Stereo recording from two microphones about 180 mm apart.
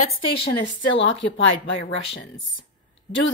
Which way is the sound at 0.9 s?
90° left.